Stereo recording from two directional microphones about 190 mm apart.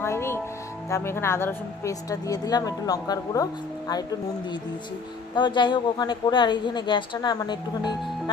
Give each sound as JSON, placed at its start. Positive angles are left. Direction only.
{"t": 0.0, "sound": "music", "side_deg": 15}
{"t": 0.9, "sound": "a woman's voice", "side_deg": 15}
{"t": 5.3, "sound": "a woman's voice", "side_deg": 25}